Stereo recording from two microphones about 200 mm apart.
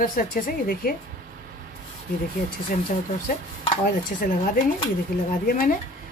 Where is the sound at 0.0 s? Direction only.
45° left (ahead or behind).